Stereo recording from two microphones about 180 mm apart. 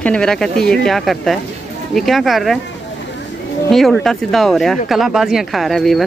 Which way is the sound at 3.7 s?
Centre (ahead or behind).